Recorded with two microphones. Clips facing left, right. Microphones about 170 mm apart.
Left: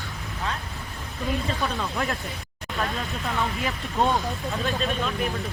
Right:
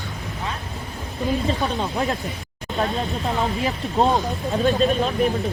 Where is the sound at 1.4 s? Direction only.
30° right (ahead or behind).